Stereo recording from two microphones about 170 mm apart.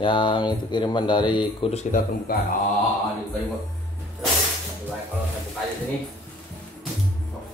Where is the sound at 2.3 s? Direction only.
60° left (ahead or behind).